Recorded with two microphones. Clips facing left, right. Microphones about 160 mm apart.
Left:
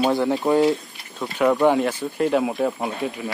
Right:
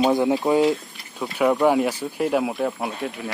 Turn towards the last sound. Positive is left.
turn(degrees=0)  # may be behind; listen again after turning